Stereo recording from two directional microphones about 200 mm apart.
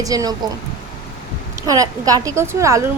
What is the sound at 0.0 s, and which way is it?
Speech, 15° right (ahead or behind).